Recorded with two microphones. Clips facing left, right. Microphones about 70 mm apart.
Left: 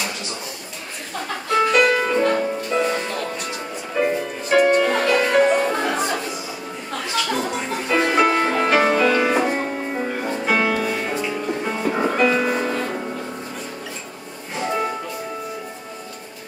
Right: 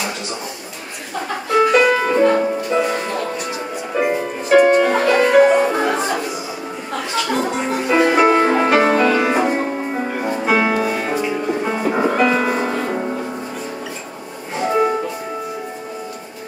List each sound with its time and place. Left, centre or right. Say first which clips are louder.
1.5 s music: right 3 dB; centre
4.5 s music: right 4 dB; centre
14.5 s music: right 6 dB; centre